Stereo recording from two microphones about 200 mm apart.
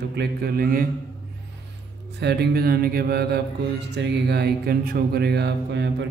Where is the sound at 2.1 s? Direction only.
55° right (ahead or behind).